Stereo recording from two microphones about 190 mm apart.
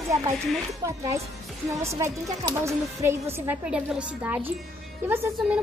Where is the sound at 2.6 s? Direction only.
15° right (ahead or behind).